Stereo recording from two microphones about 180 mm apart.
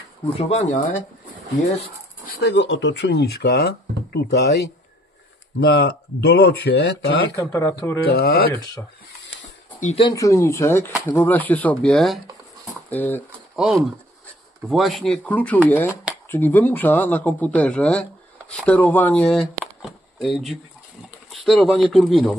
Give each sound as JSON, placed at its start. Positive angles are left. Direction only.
{"t": 0.4, "sound": "speech", "side_deg": 40}
{"t": 2.2, "sound": "speech", "side_deg": 75}
{"t": 7.3, "sound": "speech", "side_deg": 15}
{"t": 8.1, "sound": "speech", "side_deg": 60}
{"t": 9.8, "sound": "speech", "side_deg": 40}
{"t": 10.0, "sound": "speech", "side_deg": 20}
{"t": 13.6, "sound": "speech", "side_deg": -5}